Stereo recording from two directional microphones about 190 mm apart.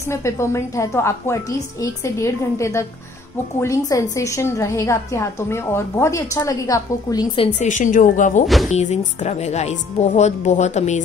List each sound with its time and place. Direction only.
0.1 s a woman's voice: 15° left (ahead or behind)
7.5 s speech: 40° left (ahead or behind)
8.5 s speech: centre (ahead or behind)
8.7 s speech: 35° left (ahead or behind)